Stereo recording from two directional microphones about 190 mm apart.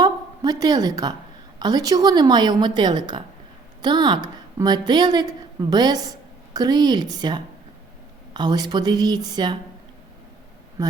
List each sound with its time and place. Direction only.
0.6 s a woman's voice: 20° right (ahead or behind)